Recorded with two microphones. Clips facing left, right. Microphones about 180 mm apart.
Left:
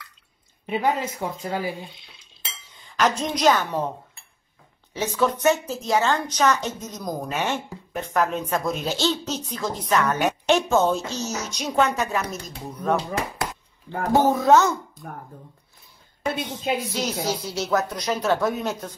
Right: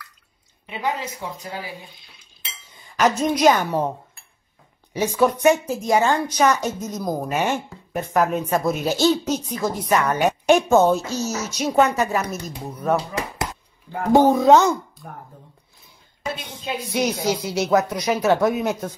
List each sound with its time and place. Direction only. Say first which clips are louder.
0.7 s speech: left 3 dB; 50° left (ahead or behind)
2.7 s a woman's voice: right 3 dB; 10° right (ahead or behind)
4.9 s a woman's voice: right 4 dB; 10° right (ahead or behind)
14.1 s a woman's voice: right 4 dB; 15° right (ahead or behind)
17.0 s a woman's voice: right 4 dB; 15° right (ahead or behind)